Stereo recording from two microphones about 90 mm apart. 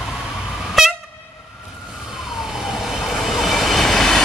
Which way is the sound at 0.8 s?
Centre (ahead or behind).